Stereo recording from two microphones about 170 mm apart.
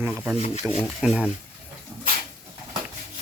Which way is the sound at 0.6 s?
Centre (ahead or behind).